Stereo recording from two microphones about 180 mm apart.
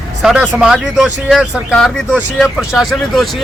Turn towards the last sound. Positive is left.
turn(degrees=0)  # may be behind; listen again after turning